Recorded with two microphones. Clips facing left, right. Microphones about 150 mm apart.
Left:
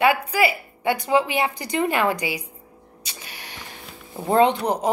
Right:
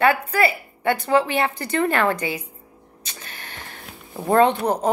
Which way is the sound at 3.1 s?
10° left (ahead or behind).